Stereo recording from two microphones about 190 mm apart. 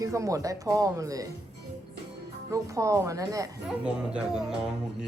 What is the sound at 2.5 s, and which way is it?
Speech, 15° right (ahead or behind).